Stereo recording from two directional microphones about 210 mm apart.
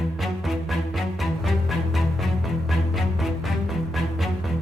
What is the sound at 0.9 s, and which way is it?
Music, centre (ahead or behind).